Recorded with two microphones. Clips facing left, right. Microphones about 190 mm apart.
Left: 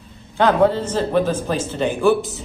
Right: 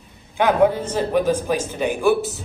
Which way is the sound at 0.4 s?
15° right (ahead or behind).